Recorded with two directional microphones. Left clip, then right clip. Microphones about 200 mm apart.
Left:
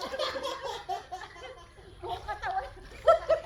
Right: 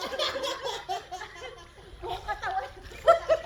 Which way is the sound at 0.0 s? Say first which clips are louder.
Right 3 dB; 40° right (ahead or behind).